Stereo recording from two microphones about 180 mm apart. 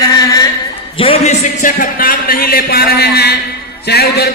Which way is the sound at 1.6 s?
50° left (ahead or behind).